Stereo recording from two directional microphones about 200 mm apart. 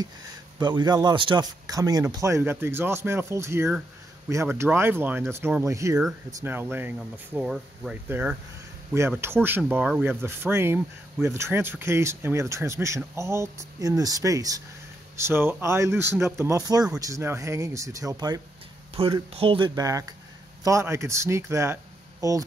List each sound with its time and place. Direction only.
0.6 s speech: 20° right (ahead or behind)